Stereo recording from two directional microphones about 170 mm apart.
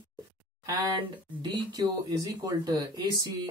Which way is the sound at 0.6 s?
20° right (ahead or behind).